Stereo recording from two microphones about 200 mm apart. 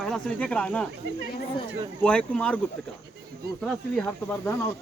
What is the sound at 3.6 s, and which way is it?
Speech, 5° left (ahead or behind).